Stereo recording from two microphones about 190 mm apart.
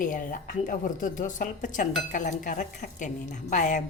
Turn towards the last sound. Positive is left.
turn(degrees=40)  # may be behind; listen again after turning